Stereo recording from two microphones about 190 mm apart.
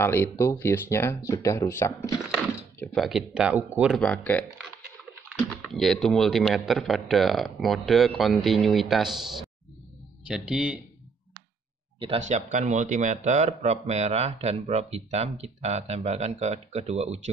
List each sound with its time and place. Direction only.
0.0 s speech: 10° left (ahead or behind)
2.3 s speech: centre (ahead or behind)
4.0 s speech: 5° left (ahead or behind)
5.6 s speech: centre (ahead or behind)
12.2 s speech: 40° right (ahead or behind)